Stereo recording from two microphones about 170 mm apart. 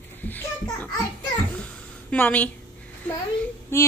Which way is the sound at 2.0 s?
10° left (ahead or behind).